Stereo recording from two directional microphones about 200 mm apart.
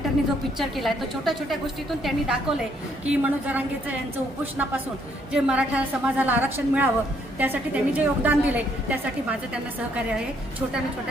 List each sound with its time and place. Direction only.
0.6 s a woman's voice: centre (ahead or behind)
5.3 s a woman's voice: 5° right (ahead or behind)